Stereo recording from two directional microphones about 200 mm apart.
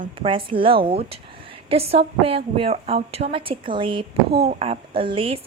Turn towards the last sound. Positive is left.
turn(degrees=-25)  # may be behind; listen again after turning